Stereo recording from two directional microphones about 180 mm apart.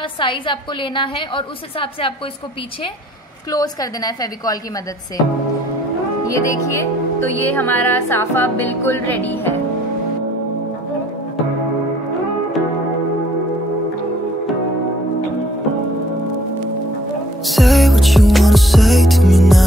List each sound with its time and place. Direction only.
0.2 s a woman's voice: 30° left (ahead or behind)
3.5 s a woman's voice: 20° left (ahead or behind)
6.2 s music: 15° left (ahead or behind)
17.5 s music: centre (ahead or behind)